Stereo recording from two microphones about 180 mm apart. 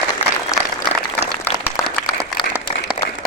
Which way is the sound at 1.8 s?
15° left (ahead or behind).